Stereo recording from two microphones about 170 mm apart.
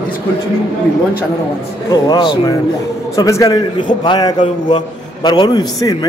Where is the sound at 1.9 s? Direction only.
25° left (ahead or behind).